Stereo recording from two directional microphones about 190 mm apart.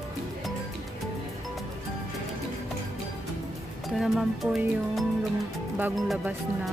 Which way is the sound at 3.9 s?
Centre (ahead or behind).